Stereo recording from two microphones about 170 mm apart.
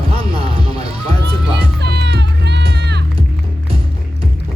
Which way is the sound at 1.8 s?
80° right.